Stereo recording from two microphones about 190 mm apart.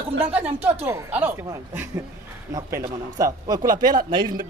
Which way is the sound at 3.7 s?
45° right (ahead or behind).